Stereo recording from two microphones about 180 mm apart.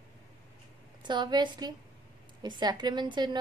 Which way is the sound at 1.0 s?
25° right (ahead or behind).